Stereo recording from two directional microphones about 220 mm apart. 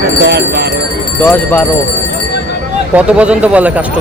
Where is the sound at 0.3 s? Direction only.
50° right (ahead or behind).